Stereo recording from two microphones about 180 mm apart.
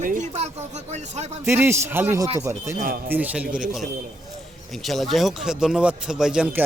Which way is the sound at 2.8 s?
55° right (ahead or behind).